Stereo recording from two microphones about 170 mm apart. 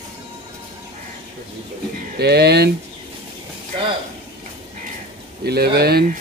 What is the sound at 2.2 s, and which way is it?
Speech, 75° right (ahead or behind).